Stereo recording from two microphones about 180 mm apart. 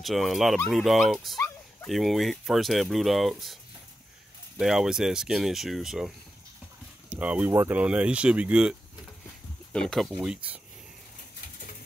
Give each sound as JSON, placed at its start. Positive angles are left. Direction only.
{"t": 0.0, "sound": "speech", "side_deg": 0}
{"t": 4.6, "sound": "speech", "side_deg": 0}